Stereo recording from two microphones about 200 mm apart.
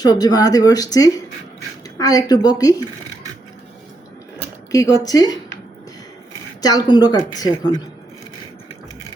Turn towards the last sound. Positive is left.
turn(degrees=20)  # may be behind; listen again after turning